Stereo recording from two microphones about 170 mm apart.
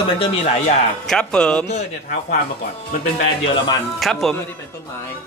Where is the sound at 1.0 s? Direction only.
5° left (ahead or behind).